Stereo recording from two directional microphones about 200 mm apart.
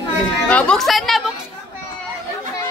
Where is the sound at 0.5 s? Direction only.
5° left (ahead or behind).